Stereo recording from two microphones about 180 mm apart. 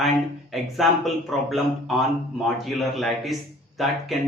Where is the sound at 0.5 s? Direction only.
Centre (ahead or behind).